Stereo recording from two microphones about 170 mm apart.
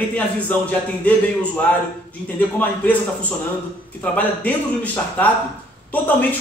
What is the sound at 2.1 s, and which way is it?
A man's voice, 10° left (ahead or behind).